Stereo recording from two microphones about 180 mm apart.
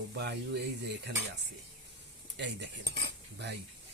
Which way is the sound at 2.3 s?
75° right (ahead or behind).